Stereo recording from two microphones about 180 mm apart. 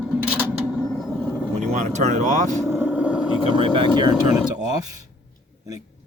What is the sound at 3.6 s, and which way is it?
Speech, 25° right (ahead or behind).